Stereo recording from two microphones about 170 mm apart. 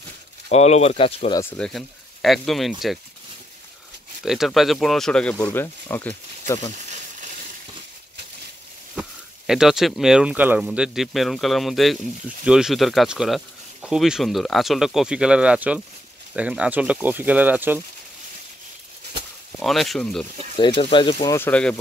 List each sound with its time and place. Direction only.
0.5 s speech: 40° left (ahead or behind)
1.6 s speech: centre (ahead or behind)
4.2 s speech: centre (ahead or behind); by 6.7 s 15° left (ahead or behind)
9.5 s speech: 5° right (ahead or behind)
19.6 s speech: centre (ahead or behind)
20.5 s speech: 30° left (ahead or behind)
21.4 s speech: 10° left (ahead or behind)